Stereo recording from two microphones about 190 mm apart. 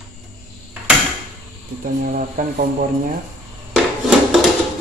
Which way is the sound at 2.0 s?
45° right (ahead or behind).